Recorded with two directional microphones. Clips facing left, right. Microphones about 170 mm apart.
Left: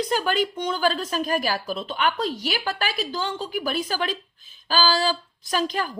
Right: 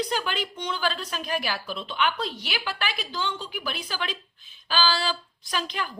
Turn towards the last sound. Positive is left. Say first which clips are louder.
# left 6 dB
turn(degrees=40)  # may be behind; listen again after turning